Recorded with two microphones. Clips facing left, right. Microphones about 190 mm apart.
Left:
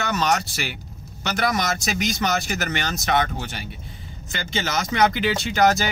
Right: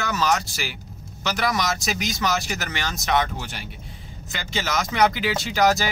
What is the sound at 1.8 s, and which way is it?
A man's voice, centre (ahead or behind).